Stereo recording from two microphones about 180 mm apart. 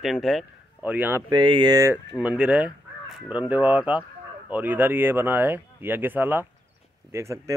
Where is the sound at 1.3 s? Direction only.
25° right (ahead or behind).